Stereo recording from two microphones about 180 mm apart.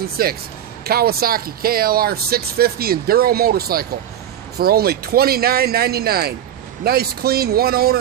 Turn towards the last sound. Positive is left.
turn(degrees=-60)  # may be behind; listen again after turning